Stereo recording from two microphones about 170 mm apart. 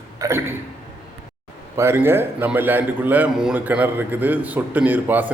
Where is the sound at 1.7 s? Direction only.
15° right (ahead or behind).